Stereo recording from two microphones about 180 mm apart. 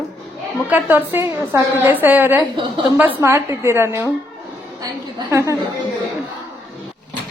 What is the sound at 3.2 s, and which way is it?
A woman's voice, 15° right (ahead or behind).